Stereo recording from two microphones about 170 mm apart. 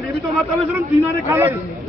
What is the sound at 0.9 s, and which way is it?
Speech, 15° right (ahead or behind).